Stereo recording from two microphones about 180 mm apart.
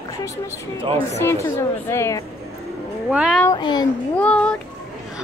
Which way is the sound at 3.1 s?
5° right (ahead or behind).